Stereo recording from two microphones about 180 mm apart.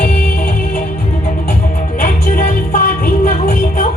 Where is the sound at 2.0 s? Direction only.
55° left (ahead or behind).